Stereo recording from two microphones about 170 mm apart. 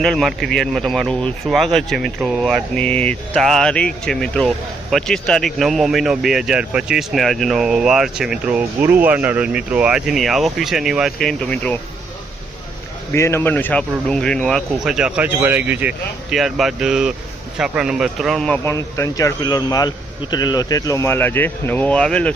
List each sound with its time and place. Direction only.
0.0 s speech: centre (ahead or behind)
13.1 s speech: 15° left (ahead or behind)